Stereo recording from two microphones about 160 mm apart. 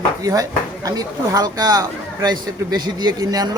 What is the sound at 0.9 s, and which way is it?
A man's voice, 25° right (ahead or behind).